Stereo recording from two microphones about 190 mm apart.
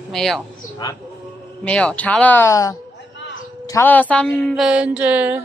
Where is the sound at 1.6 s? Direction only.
5° left (ahead or behind).